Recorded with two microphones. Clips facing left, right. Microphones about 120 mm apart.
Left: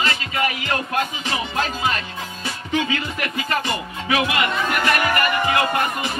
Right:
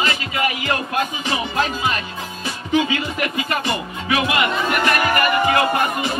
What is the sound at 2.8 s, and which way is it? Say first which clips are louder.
Music: right 4 dB; 20° right (ahead or behind).